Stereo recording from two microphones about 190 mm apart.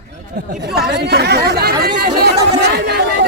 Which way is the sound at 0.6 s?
55° right (ahead or behind).